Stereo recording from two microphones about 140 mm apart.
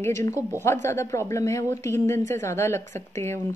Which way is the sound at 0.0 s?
20° left (ahead or behind).